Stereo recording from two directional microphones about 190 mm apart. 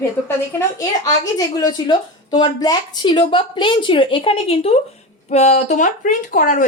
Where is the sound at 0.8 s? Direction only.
20° left (ahead or behind).